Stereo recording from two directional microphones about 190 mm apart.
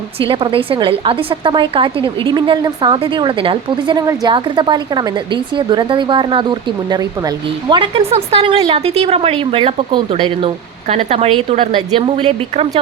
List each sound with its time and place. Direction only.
0.2 s a woman's voice: 30° right (ahead or behind)